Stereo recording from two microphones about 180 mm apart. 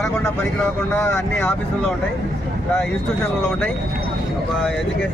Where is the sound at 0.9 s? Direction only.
10° left (ahead or behind).